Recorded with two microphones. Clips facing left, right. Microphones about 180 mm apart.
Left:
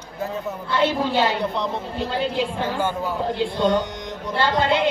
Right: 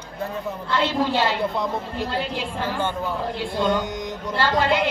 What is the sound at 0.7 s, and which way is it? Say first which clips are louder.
Speech: left 1 dB; 15° left (ahead or behind).